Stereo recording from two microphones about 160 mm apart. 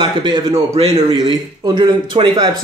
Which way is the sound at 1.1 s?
25° right (ahead or behind).